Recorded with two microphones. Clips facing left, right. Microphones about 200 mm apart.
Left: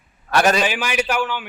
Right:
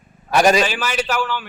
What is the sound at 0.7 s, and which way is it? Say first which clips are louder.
Speech: even; 15° left (ahead or behind).